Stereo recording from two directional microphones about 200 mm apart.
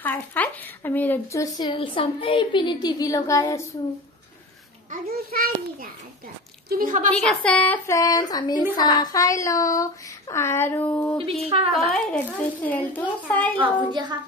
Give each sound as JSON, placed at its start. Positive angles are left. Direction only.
{"t": 0.0, "sound": "speech", "side_deg": 10}
{"t": 5.3, "sound": "a child's voice", "side_deg": -45}
{"t": 7.1, "sound": "speech", "side_deg": 5}
{"t": 11.4, "sound": "a woman's voice", "side_deg": -30}
{"t": 11.9, "sound": "speech", "side_deg": 5}
{"t": 13.6, "sound": "a child's voice", "side_deg": -20}